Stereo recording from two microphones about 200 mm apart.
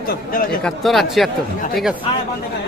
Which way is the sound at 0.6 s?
Centre (ahead or behind).